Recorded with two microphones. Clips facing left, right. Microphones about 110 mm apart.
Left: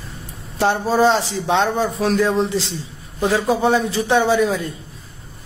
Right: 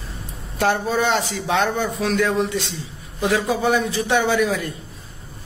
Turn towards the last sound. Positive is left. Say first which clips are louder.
# left 3 dB
turn(degrees=30)  # may be behind; listen again after turning